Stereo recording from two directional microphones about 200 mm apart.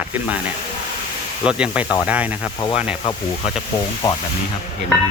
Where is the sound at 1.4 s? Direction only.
5° right (ahead or behind).